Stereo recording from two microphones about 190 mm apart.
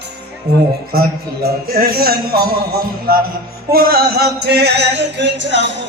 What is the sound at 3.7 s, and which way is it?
Music, 55° right (ahead or behind).